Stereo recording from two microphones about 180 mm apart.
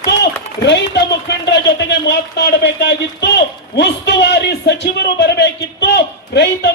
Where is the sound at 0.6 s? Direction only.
70° left (ahead or behind).